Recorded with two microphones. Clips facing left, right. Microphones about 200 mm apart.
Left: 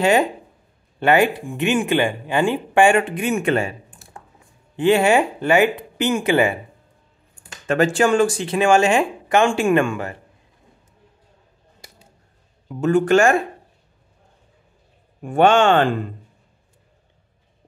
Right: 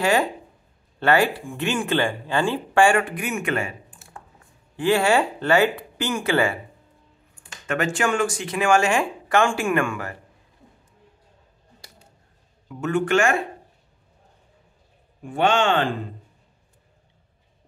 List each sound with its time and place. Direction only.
0.0 s speech: 20° left (ahead or behind)
4.7 s speech: 20° left (ahead or behind)
7.6 s speech: 30° left (ahead or behind)
12.6 s speech: 35° left (ahead or behind)
15.2 s speech: 50° left (ahead or behind)